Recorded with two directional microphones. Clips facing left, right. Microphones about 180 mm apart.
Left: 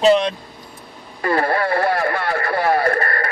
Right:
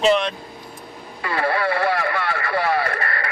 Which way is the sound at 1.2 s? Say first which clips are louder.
Left 3 dB; 45° left (ahead or behind).